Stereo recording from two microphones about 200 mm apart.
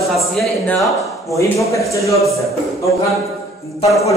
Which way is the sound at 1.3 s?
15° left (ahead or behind).